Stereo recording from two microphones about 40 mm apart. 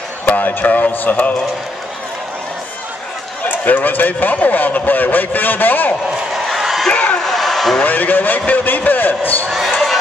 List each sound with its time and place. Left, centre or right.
0.2 s a man's voice: left
3.4 s a man's voice: left
6.3 s a sound: centre
6.9 s a sound: left
7.2 s vehicle: centre
7.8 s a man's voice: left